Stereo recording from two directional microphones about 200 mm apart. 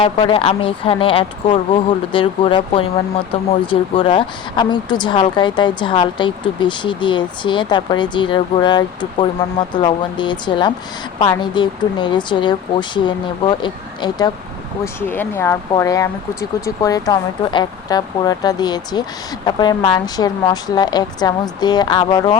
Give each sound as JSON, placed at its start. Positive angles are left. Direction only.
{"t": 0.0, "sound": "speech", "side_deg": 25}
{"t": 15.0, "sound": "speech", "side_deg": 10}